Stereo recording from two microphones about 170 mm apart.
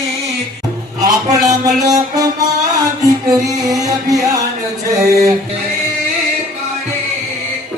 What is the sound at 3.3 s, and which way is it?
Music, 20° right (ahead or behind).